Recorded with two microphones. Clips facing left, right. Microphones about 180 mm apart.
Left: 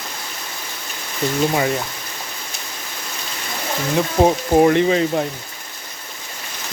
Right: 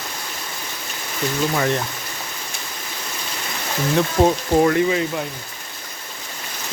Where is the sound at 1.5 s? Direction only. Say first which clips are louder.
Left 1 dB; 10° left (ahead or behind).